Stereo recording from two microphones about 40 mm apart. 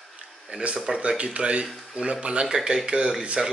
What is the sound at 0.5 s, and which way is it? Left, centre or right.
Speech, right.